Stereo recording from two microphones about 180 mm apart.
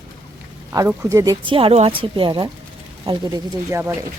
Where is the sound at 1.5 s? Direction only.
30° right (ahead or behind).